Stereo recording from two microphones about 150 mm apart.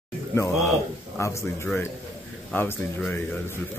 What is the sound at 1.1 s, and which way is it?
Speech, 20° left (ahead or behind).